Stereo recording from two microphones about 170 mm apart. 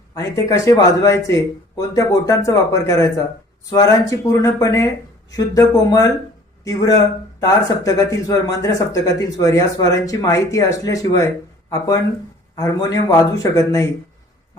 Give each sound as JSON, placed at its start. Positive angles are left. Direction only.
{"t": 0.4, "sound": "speech", "side_deg": 20}
{"t": 12.5, "sound": "speech", "side_deg": 20}